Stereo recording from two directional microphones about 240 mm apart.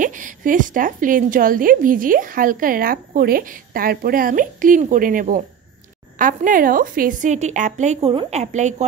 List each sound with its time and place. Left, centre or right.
0.0 s a woman's voice: right